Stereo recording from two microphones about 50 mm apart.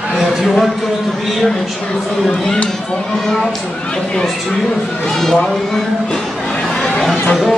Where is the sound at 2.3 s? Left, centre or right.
Centre.